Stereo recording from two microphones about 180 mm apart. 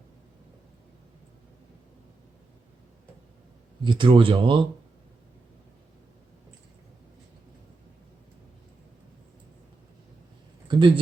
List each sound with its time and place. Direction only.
3.8 s speech: 30° right (ahead or behind)
10.7 s speech: 25° right (ahead or behind)